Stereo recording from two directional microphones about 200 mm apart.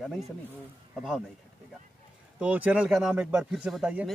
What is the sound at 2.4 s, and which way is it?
Speech, 5° right (ahead or behind).